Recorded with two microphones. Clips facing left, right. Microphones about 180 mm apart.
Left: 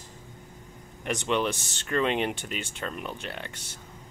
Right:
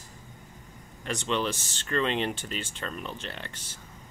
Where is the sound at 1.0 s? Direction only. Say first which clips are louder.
Left 2 dB; 15° left (ahead or behind).